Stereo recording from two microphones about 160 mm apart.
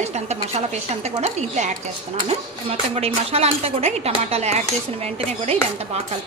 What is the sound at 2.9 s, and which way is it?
Speech, 40° right (ahead or behind).